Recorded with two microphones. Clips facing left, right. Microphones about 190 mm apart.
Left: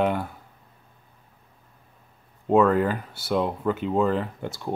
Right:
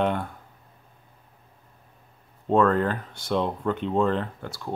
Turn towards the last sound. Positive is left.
turn(degrees=20)  # may be behind; listen again after turning